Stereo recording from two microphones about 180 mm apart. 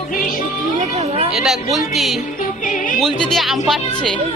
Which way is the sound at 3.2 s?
Centre (ahead or behind).